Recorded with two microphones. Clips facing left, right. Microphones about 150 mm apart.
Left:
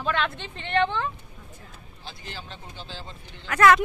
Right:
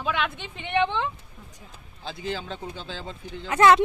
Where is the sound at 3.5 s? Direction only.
25° right (ahead or behind).